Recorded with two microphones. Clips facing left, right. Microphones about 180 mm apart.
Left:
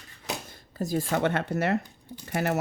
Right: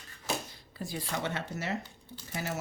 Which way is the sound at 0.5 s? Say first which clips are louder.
Left 10 dB; 45° left (ahead or behind).